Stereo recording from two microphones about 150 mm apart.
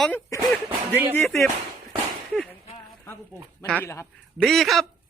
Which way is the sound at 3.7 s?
15° left (ahead or behind).